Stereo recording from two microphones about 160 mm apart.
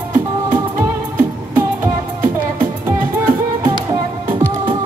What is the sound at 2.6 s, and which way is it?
Music, 15° right (ahead or behind).